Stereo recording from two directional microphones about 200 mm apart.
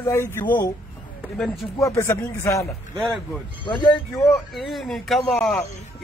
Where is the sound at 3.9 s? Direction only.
Centre (ahead or behind).